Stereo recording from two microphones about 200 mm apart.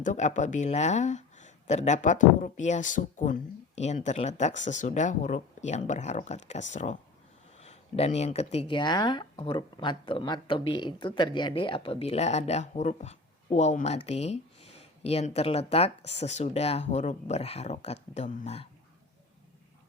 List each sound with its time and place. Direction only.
0.0 s speech: 35° left (ahead or behind)